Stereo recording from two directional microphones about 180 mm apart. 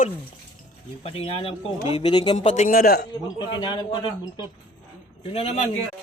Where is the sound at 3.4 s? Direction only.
25° left (ahead or behind).